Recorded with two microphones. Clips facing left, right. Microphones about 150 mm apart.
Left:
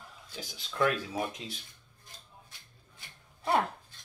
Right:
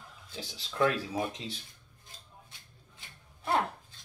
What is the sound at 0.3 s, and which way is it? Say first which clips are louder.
Speech: right 1 dB; 25° right (ahead or behind).